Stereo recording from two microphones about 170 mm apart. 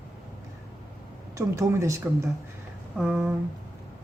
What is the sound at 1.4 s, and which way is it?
Speech, 20° right (ahead or behind).